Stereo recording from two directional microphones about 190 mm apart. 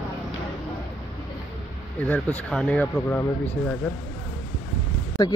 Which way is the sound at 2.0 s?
5° left (ahead or behind).